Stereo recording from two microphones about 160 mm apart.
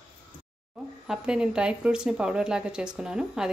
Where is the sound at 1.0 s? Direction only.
5° right (ahead or behind).